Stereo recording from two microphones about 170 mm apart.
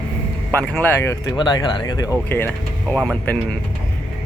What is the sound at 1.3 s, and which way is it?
Speech, 25° left (ahead or behind).